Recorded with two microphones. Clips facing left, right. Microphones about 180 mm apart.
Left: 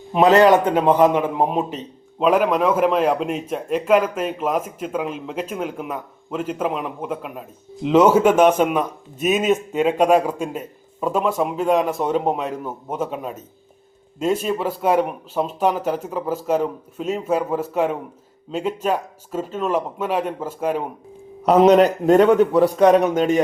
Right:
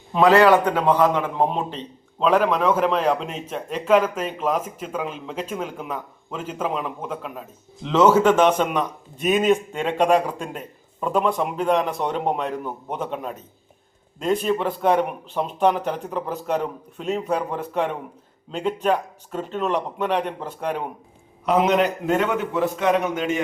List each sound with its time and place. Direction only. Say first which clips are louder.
0.1 s a man's voice: left 2 dB; 20° left (ahead or behind)
21.4 s a man's voice: left 6 dB; 40° left (ahead or behind)